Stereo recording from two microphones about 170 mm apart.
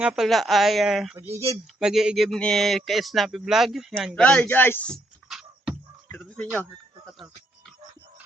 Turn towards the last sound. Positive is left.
turn(degrees=0)  # may be behind; listen again after turning